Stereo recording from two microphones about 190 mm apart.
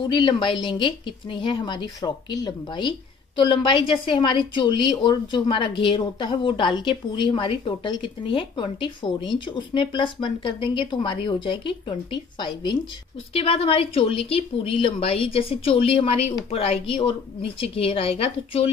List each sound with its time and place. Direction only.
0.1 s a woman's voice: 25° left (ahead or behind)